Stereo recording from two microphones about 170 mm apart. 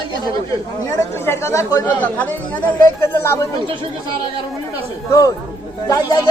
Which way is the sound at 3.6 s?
30° right (ahead or behind).